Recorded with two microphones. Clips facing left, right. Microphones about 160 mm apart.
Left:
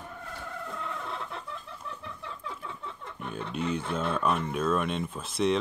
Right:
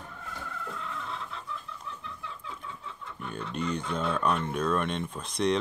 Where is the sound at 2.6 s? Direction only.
60° left (ahead or behind).